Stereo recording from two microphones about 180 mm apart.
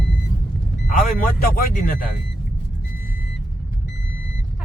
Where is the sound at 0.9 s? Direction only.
50° left (ahead or behind).